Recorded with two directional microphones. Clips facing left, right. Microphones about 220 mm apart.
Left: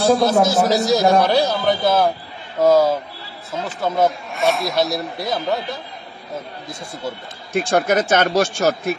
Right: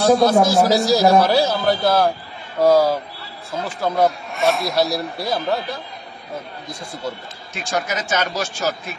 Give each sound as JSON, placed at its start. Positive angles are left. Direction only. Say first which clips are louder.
{"t": 0.4, "sound": "speech", "louder": "right 1 dB", "side_deg": 0}
{"t": 7.5, "sound": "speech", "louder": "left 8 dB", "side_deg": 55}